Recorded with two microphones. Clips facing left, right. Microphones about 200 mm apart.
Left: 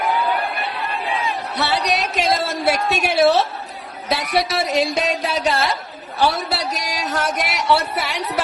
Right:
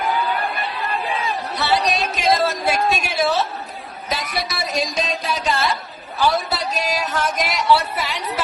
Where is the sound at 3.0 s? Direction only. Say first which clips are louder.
Left 5 dB; 65° left (ahead or behind).